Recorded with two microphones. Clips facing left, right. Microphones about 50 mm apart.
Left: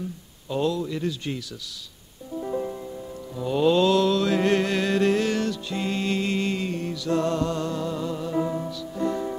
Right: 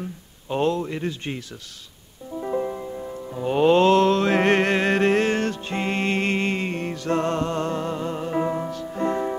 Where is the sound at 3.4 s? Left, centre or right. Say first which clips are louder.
Right 3 dB; right.